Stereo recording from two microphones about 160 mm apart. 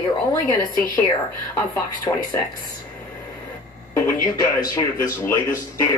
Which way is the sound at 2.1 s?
20° left (ahead or behind).